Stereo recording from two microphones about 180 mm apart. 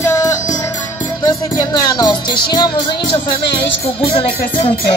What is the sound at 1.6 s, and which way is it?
Music, 20° left (ahead or behind).